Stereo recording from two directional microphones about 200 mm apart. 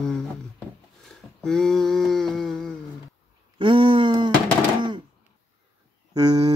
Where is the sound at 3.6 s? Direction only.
25° right (ahead or behind).